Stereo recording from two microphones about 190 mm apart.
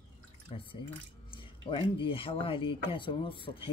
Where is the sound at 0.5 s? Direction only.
30° left (ahead or behind).